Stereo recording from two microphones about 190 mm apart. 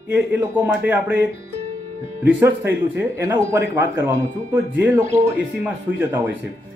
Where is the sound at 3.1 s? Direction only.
10° right (ahead or behind).